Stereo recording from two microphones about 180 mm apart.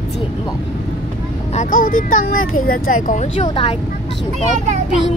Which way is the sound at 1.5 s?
50° left (ahead or behind).